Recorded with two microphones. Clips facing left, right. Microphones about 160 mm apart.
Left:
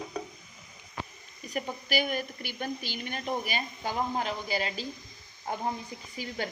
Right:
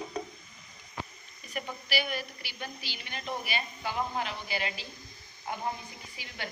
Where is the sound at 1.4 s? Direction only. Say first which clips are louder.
Left 4 dB; 45° left (ahead or behind).